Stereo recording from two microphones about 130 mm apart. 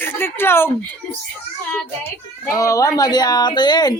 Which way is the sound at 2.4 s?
25° left (ahead or behind).